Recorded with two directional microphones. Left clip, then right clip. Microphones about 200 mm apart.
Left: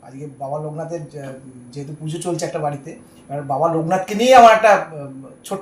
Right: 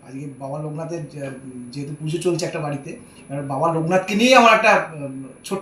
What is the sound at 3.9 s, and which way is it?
Speech, 20° left (ahead or behind).